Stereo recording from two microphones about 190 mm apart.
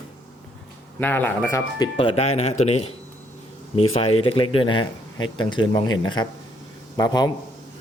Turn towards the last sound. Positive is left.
turn(degrees=20)  # may be behind; listen again after turning